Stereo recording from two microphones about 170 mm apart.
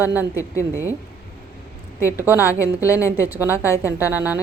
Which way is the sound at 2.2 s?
10° right (ahead or behind).